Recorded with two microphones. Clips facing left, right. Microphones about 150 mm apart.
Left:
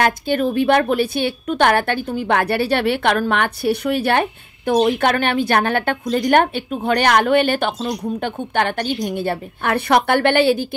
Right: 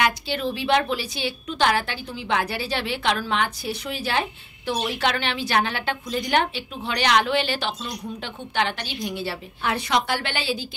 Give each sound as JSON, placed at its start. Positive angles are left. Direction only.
{"t": 0.0, "sound": "a woman's voice", "side_deg": 50}